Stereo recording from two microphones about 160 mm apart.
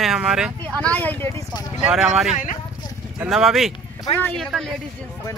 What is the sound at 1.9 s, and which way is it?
Speech, 5° right (ahead or behind).